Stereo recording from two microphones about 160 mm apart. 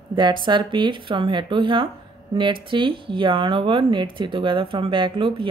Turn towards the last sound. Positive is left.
turn(degrees=-30)  # may be behind; listen again after turning